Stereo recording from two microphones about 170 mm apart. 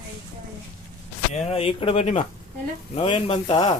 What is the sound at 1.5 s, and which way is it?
Speech, 30° left (ahead or behind).